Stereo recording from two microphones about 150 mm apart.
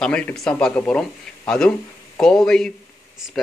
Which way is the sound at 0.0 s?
5° left (ahead or behind).